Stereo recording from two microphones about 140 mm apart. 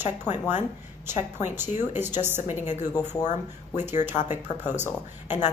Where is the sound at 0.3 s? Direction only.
55° left (ahead or behind).